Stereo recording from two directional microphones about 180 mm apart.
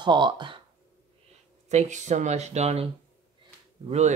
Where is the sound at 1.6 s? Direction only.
40° right (ahead or behind).